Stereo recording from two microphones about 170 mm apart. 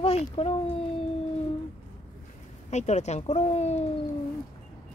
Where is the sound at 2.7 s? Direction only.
40° left (ahead or behind).